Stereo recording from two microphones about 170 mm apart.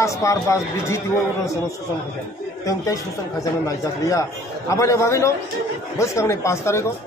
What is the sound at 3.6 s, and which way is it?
A man's voice, 20° left (ahead or behind).